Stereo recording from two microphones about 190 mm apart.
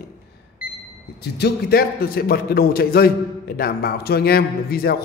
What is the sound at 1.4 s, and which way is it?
A man's voice, 55° left (ahead or behind).